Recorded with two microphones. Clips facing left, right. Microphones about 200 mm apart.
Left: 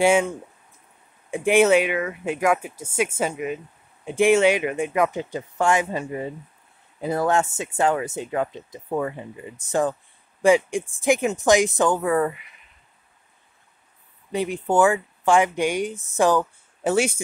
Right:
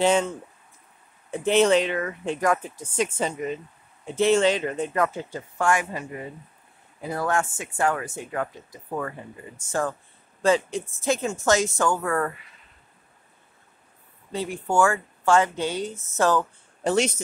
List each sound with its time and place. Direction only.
0.0 s speech: 10° left (ahead or behind)
14.3 s speech: 20° left (ahead or behind)